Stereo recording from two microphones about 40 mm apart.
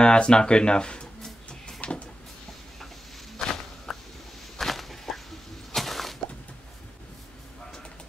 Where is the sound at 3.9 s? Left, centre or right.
Centre.